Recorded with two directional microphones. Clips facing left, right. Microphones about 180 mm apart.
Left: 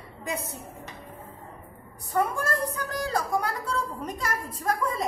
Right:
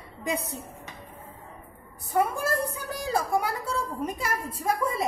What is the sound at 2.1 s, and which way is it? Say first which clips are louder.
A woman's voice: right 1 dB; 10° right (ahead or behind).